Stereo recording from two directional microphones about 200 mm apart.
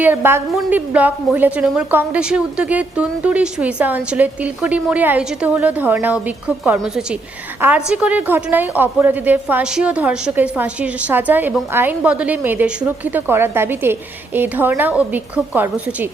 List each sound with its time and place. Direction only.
0.0 s a woman's voice: 10° right (ahead or behind)